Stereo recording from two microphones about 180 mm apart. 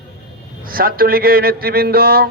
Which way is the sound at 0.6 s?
55° right (ahead or behind).